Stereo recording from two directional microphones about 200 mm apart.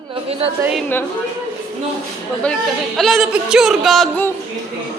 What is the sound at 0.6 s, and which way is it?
Speech, 5° right (ahead or behind).